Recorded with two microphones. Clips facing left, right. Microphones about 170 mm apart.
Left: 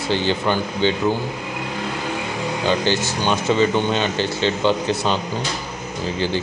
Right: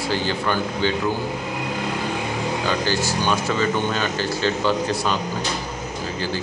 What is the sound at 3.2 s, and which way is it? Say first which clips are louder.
Speech: left 6 dB; 25° left (ahead or behind).